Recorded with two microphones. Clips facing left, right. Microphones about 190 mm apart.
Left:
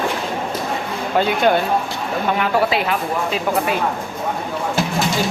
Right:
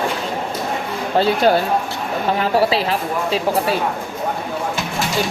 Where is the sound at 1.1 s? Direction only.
35° right (ahead or behind).